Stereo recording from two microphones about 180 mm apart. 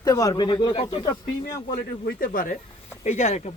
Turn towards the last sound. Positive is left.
turn(degrees=40)  # may be behind; listen again after turning